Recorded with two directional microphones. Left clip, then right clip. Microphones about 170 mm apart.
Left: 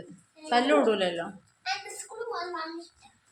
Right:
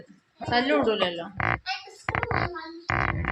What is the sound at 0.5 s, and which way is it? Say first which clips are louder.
A woman's voice: even; centre (ahead or behind).